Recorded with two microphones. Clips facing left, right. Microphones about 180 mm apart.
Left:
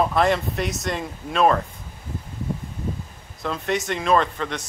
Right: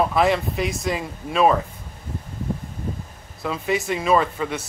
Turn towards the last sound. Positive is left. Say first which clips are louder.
# right 1 dB
turn(degrees=-5)  # may be behind; listen again after turning